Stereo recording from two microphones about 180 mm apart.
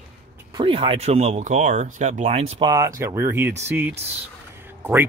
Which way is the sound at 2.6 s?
20° right (ahead or behind).